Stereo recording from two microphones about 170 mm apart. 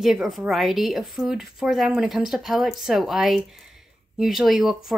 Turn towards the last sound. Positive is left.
turn(degrees=0)  # may be behind; listen again after turning